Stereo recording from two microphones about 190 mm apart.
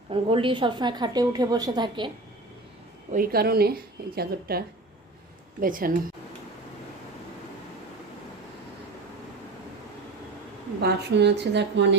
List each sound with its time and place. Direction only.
0.1 s a woman's voice: 30° right (ahead or behind)
3.1 s speech: 50° right (ahead or behind)
10.8 s a woman's voice: 60° right (ahead or behind)